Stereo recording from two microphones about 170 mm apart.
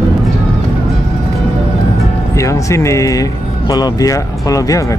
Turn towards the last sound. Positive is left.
turn(degrees=20)  # may be behind; listen again after turning